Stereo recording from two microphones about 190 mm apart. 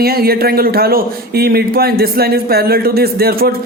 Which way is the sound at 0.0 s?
55° right (ahead or behind).